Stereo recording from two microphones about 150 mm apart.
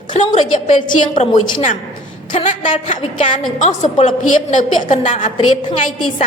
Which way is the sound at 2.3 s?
55° left (ahead or behind).